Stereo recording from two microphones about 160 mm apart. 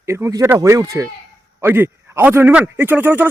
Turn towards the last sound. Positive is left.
turn(degrees=-10)  # may be behind; listen again after turning